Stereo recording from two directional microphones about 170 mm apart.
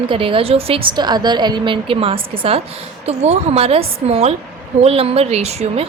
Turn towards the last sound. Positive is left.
turn(degrees=-40)  # may be behind; listen again after turning